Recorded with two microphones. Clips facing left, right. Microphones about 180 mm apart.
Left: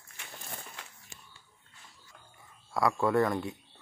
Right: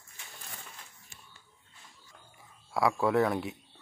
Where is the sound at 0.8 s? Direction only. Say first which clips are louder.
Left 4 dB; 80° left.